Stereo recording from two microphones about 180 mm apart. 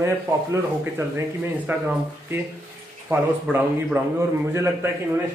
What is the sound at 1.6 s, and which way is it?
Speech, 10° right (ahead or behind).